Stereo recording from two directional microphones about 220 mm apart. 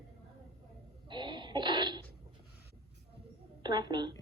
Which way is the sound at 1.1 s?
20° right (ahead or behind).